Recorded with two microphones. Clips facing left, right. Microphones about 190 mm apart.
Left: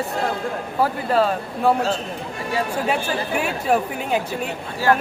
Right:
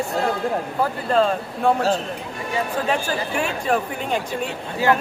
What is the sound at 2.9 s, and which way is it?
Speech, 5° left (ahead or behind).